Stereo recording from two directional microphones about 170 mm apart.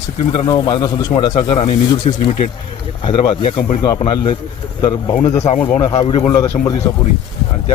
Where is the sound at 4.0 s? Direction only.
30° left (ahead or behind).